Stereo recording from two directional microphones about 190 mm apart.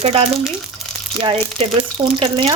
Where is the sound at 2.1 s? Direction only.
25° right (ahead or behind).